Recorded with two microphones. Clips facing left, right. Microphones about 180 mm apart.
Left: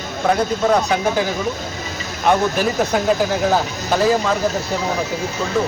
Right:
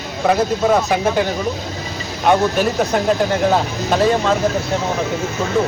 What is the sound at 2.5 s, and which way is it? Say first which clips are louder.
Speech: right 1 dB; centre (ahead or behind).